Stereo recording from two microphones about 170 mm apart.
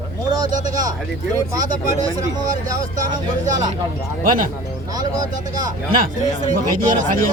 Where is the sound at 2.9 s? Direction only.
50° right (ahead or behind).